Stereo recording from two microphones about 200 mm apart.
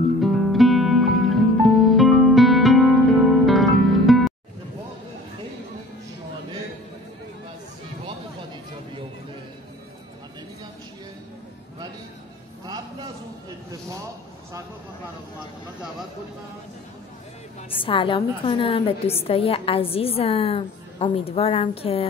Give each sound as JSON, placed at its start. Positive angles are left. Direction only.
{"t": 0.2, "sound": "music", "side_deg": 0}
{"t": 17.8, "sound": "a woman's voice", "side_deg": 25}